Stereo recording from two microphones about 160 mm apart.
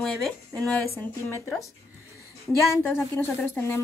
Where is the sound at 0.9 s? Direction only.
15° left (ahead or behind).